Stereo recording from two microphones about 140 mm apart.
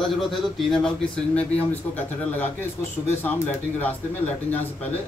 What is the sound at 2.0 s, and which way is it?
Speech, 15° left (ahead or behind).